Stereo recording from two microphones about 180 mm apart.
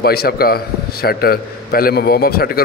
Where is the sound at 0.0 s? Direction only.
60° left (ahead or behind).